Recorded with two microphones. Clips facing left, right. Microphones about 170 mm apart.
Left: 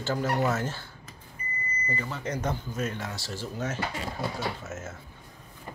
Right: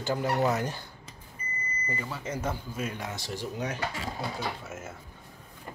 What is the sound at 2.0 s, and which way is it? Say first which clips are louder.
Speech: left 2 dB; 5° right (ahead or behind).